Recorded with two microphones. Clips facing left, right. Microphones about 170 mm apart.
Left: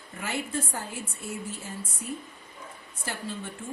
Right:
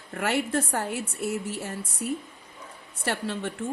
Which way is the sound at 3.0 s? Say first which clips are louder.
Right 6 dB; 70° right (ahead or behind).